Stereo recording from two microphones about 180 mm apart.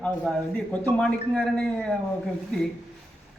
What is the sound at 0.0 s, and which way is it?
A man's voice, 5° left (ahead or behind).